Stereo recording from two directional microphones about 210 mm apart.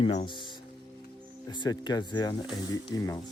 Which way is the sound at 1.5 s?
20° left (ahead or behind).